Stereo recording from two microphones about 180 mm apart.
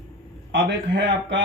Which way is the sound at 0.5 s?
85° right.